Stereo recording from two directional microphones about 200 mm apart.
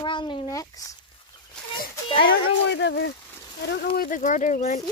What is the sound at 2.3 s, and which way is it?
Speech, 60° left (ahead or behind).